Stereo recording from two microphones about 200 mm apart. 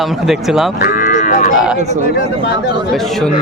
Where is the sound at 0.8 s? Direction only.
40° left (ahead or behind).